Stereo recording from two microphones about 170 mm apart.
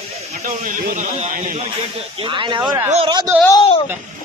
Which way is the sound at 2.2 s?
30° right (ahead or behind).